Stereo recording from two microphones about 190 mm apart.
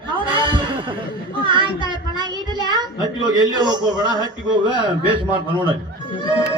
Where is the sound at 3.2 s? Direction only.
20° right (ahead or behind).